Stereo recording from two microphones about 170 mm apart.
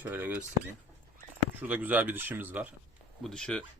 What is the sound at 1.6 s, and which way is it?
Speech, 10° right (ahead or behind).